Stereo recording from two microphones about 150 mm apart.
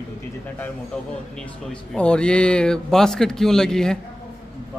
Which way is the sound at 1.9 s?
5° left (ahead or behind).